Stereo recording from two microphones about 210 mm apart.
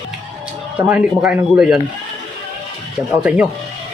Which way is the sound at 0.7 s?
5° right (ahead or behind).